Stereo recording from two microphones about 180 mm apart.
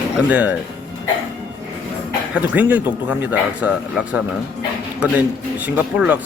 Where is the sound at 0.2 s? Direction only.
10° right (ahead or behind).